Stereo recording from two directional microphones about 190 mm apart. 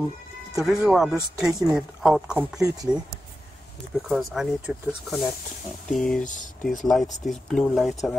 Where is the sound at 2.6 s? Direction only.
20° right (ahead or behind).